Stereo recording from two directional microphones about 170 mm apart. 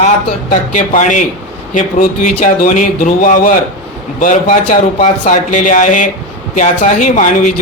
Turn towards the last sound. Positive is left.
turn(degrees=45)  # may be behind; listen again after turning